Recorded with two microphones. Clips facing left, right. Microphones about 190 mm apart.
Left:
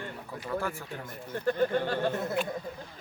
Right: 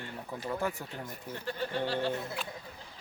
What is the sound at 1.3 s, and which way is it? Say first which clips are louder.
Speech: left 9 dB; 50° left (ahead or behind).